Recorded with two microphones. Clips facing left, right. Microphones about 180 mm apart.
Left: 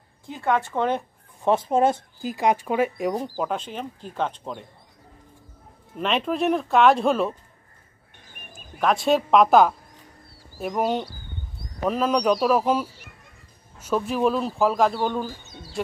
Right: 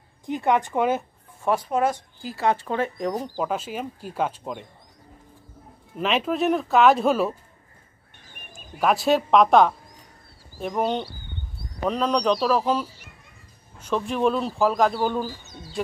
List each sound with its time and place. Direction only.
0.3 s speech: 15° right (ahead or behind)
1.4 s speech: 25° left (ahead or behind)
3.2 s speech: 5° right (ahead or behind)
5.9 s speech: centre (ahead or behind)
8.5 s speech: 5° right (ahead or behind)